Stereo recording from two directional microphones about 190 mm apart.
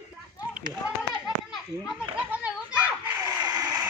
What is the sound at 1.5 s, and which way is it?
Children playing, 5° right (ahead or behind).